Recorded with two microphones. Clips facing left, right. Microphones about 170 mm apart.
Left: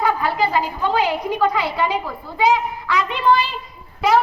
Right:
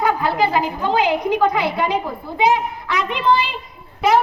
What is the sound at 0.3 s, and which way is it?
A woman's voice, 20° right (ahead or behind).